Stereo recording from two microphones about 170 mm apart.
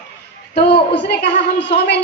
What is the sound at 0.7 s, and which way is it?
A woman's voice, 85° left.